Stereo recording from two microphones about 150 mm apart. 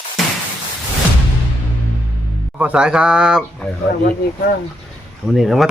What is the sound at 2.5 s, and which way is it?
Speech, 10° right (ahead or behind).